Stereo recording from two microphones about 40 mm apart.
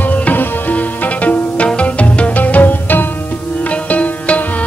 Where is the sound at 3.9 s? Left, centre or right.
Left.